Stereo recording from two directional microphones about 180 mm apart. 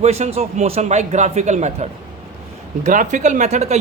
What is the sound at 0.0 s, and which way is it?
Speech, 35° right (ahead or behind).